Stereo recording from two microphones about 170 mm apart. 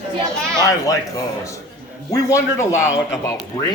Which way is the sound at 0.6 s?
20° left (ahead or behind).